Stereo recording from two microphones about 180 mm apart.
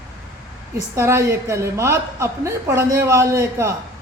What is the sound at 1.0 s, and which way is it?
A woman's voice, 15° right (ahead or behind).